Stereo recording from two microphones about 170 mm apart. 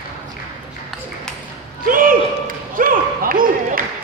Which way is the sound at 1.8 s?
55° right (ahead or behind).